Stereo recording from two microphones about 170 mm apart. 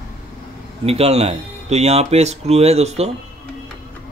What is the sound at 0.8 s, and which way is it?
Speech, 35° right (ahead or behind).